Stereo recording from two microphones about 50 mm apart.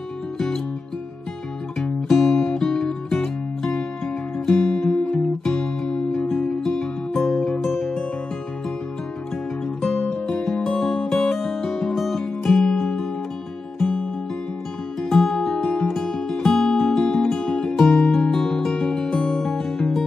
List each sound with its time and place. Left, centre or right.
1.8 s music: centre
4.5 s guitar: centre
6.6 s music: centre
9.8 s music: centre
15.6 s music: centre